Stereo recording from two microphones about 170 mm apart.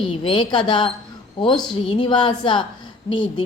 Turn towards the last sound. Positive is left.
turn(degrees=30)  # may be behind; listen again after turning